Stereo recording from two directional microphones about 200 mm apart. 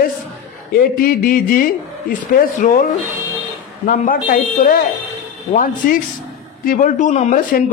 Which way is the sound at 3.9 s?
45° left (ahead or behind).